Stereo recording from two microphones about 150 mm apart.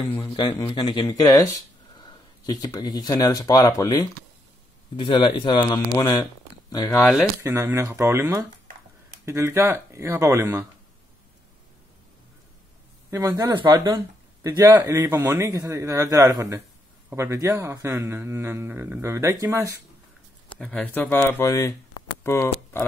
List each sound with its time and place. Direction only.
0.3 s a man's voice: 40° left (ahead or behind)
7.0 s speech: centre (ahead or behind)
7.4 s speech: 20° right (ahead or behind)
13.1 s speech: 25° right (ahead or behind)
20.5 s speech: 5° left (ahead or behind)